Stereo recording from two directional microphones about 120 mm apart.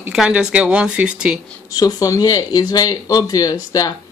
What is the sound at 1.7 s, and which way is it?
Speech, 30° left (ahead or behind).